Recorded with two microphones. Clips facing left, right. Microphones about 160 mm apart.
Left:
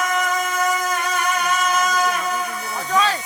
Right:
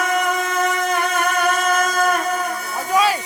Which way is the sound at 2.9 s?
10° right (ahead or behind).